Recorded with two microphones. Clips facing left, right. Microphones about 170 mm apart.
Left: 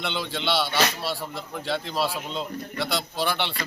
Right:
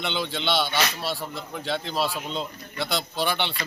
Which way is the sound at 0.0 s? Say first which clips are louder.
Right 1 dB; 5° left (ahead or behind).